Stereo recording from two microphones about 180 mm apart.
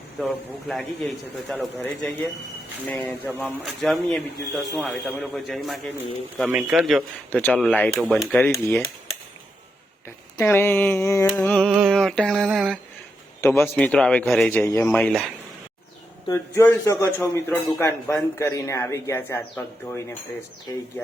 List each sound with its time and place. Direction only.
0.7 s speech: centre (ahead or behind)
10.3 s speech: 15° left (ahead or behind)
13.4 s speech: 15° left (ahead or behind)
16.3 s speech: 15° left (ahead or behind)